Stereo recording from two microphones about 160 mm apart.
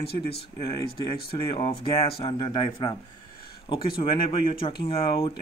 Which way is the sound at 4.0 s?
30° left (ahead or behind).